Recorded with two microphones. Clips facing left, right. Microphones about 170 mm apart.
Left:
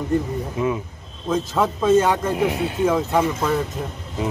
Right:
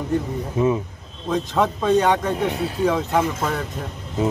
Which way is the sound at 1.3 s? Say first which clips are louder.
Even; centre (ahead or behind).